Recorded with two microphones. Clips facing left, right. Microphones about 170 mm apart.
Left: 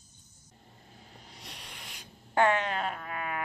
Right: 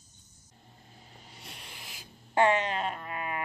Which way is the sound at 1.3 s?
5° right (ahead or behind).